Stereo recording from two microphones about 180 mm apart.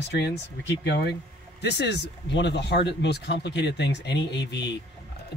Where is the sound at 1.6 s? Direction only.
70° left (ahead or behind).